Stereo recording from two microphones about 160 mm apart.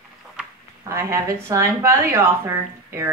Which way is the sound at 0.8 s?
20° right (ahead or behind).